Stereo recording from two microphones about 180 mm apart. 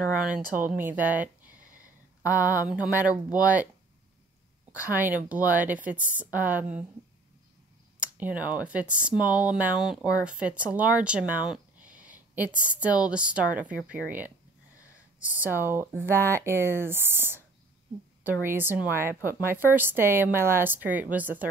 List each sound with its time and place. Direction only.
0.1 s speech: 5° right (ahead or behind)
2.2 s speech: 15° left (ahead or behind)
2.6 s speech: 10° right (ahead or behind)
4.7 s speech: 10° right (ahead or behind)
8.0 s speech: 10° right (ahead or behind)